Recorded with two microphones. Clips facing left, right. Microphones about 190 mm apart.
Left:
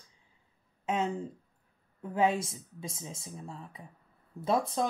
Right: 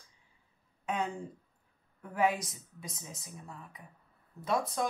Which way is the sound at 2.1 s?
25° left (ahead or behind).